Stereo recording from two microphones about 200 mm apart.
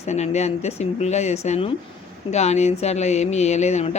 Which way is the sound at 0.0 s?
35° left (ahead or behind).